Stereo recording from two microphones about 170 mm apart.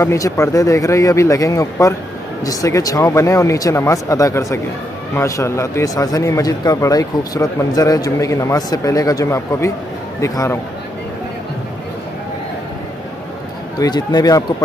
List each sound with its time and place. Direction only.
0.0 s a man's voice: 20° left (ahead or behind)
13.7 s a man's voice: 25° left (ahead or behind)